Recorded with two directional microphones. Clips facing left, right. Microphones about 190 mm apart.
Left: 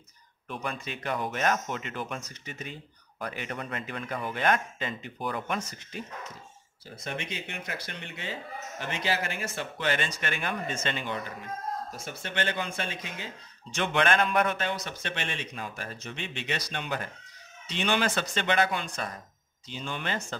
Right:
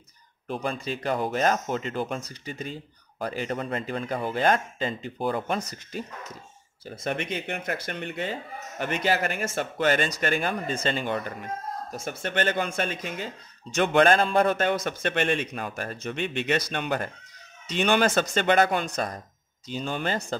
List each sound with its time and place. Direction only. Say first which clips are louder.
0.5 s speech: right 6 dB; 30° right (ahead or behind)
7.0 s speech: right 7 dB; 55° right (ahead or behind); by 11.1 s 35° right (ahead or behind)
12.0 s speech: right 9 dB; 50° right (ahead or behind); by 14.6 s 30° right (ahead or behind)
14.6 s speech: right 8 dB; 50° right (ahead or behind)